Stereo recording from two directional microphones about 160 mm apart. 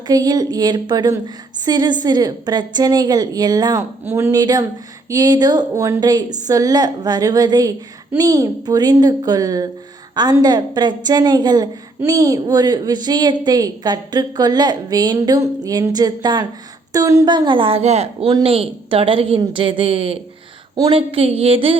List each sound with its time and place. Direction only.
0.1 s a woman's voice: 25° right (ahead or behind)